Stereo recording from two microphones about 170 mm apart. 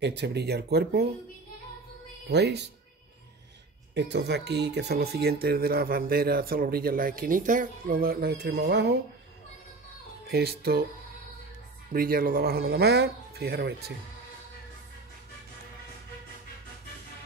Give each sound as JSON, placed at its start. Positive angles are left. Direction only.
{"t": 0.0, "sound": "speech", "side_deg": -85}
{"t": 2.2, "sound": "speech", "side_deg": -80}
{"t": 3.9, "sound": "speech", "side_deg": -90}
{"t": 10.2, "sound": "speech", "side_deg": -65}
{"t": 11.9, "sound": "speech", "side_deg": -60}